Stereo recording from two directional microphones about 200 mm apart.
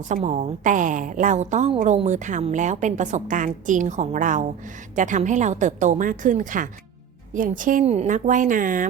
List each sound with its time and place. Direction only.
0.0 s a woman's voice: 35° right (ahead or behind)